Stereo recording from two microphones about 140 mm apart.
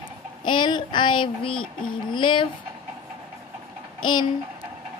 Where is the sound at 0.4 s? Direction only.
35° left (ahead or behind).